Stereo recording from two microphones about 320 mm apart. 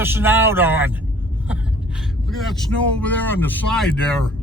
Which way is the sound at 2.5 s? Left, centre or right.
Centre.